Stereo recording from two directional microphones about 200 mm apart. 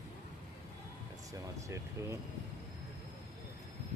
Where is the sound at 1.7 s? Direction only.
15° right (ahead or behind).